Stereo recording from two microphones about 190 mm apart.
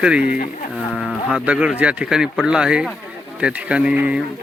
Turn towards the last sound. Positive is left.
turn(degrees=-5)  # may be behind; listen again after turning